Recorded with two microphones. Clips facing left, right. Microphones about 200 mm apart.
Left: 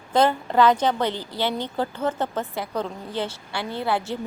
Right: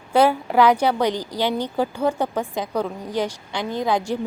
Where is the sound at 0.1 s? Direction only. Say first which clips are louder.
Right 3 dB; 10° right (ahead or behind).